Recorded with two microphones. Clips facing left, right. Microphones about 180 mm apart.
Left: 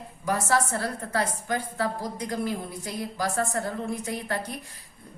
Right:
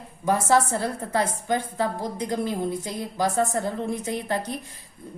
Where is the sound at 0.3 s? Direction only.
25° right (ahead or behind).